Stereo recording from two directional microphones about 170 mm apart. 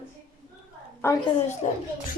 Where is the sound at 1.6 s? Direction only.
40° left (ahead or behind).